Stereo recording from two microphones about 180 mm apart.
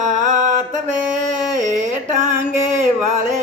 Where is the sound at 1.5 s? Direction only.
45° right (ahead or behind).